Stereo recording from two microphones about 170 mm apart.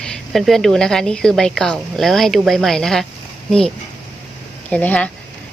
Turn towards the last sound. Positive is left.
turn(degrees=10)  # may be behind; listen again after turning